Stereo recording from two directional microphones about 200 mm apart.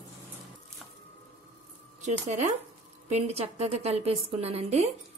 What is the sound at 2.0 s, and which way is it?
Speech, 35° right (ahead or behind).